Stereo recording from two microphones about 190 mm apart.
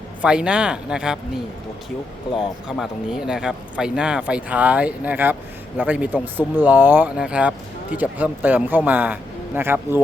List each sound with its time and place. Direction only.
0.2 s speech: 5° right (ahead or behind)
2.6 s speech: centre (ahead or behind)